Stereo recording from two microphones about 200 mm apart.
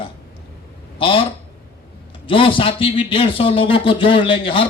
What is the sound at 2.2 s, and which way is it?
A man's voice, 25° left (ahead or behind).